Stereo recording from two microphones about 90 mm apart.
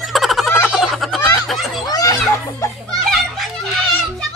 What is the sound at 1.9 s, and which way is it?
Children playing, 45° left (ahead or behind).